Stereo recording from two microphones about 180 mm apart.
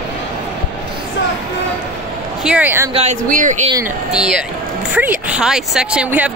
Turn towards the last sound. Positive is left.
turn(degrees=-10)  # may be behind; listen again after turning